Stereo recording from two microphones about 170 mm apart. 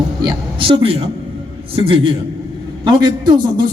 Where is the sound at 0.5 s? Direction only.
30° right (ahead or behind).